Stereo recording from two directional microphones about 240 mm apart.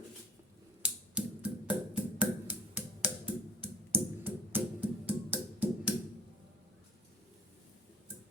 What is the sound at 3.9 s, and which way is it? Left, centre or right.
Music, centre.